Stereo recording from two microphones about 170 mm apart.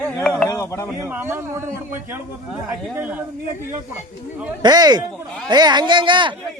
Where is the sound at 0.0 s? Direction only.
5° left (ahead or behind).